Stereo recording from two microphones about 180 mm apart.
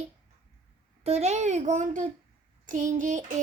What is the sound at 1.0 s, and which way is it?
A child's voice, 40° right (ahead or behind).